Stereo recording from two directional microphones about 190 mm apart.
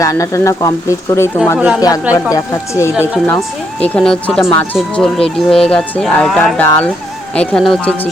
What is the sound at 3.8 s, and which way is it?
Speech, 5° left (ahead or behind).